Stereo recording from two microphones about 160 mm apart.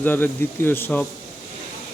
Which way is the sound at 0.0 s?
10° left (ahead or behind).